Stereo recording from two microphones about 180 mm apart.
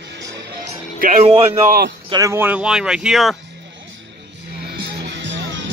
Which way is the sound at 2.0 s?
20° right (ahead or behind).